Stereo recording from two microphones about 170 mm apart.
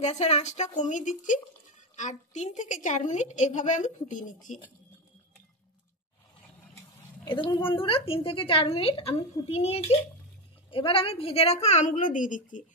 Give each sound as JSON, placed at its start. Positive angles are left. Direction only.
{"t": 0.0, "sound": "a woman's voice", "side_deg": 40}
{"t": 7.2, "sound": "a woman's voice", "side_deg": 30}